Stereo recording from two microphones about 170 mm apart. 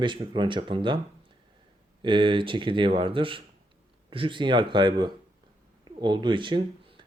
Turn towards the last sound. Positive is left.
turn(degrees=-30)  # may be behind; listen again after turning